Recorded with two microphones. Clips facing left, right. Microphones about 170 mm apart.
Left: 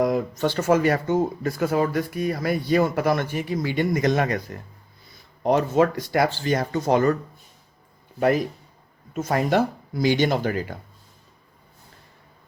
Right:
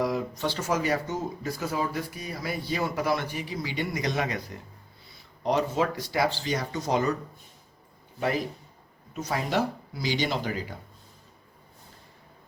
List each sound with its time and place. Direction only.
0.0 s speech: 50° left (ahead or behind)
5.4 s speech: 50° left (ahead or behind)
9.1 s speech: 50° left (ahead or behind)